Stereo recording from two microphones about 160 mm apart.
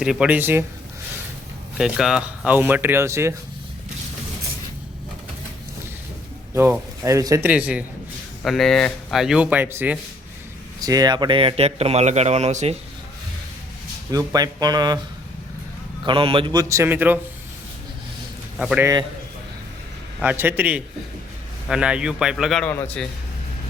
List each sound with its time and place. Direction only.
0.0 s speech: 5° right (ahead or behind)
1.8 s speech: 5° right (ahead or behind)
6.5 s speech: 15° right (ahead or behind)
7.4 s speech: 10° right (ahead or behind)
8.4 s speech: centre (ahead or behind)
10.8 s a man's voice: 25° right (ahead or behind); by 12.7 s 45° right (ahead or behind)
14.1 s a man's voice: 25° right (ahead or behind)
16.0 s a man's voice: 35° right (ahead or behind); by 17.2 s 10° right (ahead or behind)
18.8 s a man's voice: 20° right (ahead or behind)
20.1 s speech: 10° right (ahead or behind)